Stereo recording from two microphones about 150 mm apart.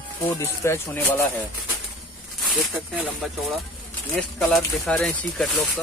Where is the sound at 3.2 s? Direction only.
Centre (ahead or behind).